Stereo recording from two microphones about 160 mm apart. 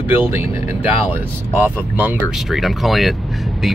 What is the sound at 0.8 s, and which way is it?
Speech, 40° left (ahead or behind).